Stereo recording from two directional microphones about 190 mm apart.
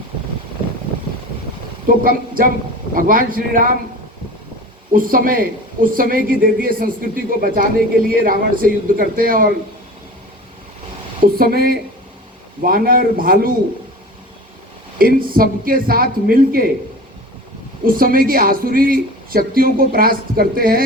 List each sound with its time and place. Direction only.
1.9 s speech: 50° right (ahead or behind)
4.9 s speech: 45° right (ahead or behind)
11.3 s speech: 50° right (ahead or behind)
14.9 s speech: 50° right (ahead or behind)
17.8 s speech: 50° right (ahead or behind)